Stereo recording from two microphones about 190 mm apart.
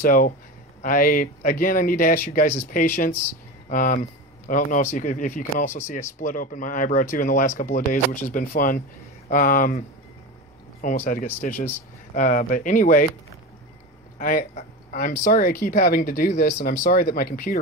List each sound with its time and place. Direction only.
0.0 s speech: 45° left (ahead or behind)
14.1 s speech: 45° left (ahead or behind)